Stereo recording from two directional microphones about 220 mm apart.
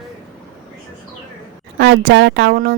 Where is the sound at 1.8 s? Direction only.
45° right (ahead or behind).